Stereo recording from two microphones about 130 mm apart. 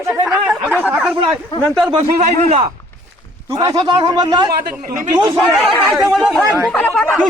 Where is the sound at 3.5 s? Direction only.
30° right (ahead or behind).